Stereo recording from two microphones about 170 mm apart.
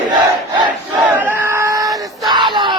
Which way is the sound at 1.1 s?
15° right (ahead or behind).